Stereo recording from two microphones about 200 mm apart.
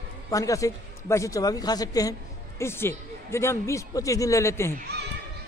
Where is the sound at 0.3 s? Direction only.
15° left (ahead or behind).